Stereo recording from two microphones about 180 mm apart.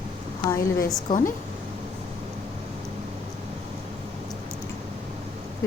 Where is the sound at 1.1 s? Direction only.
50° left (ahead or behind).